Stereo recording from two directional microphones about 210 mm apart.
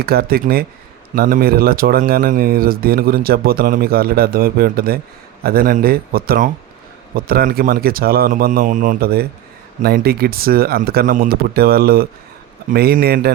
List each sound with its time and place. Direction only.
0.0 s speech: 45° right (ahead or behind)